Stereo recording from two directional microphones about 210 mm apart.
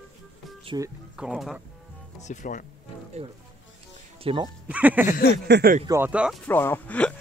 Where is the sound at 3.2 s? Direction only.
30° right (ahead or behind).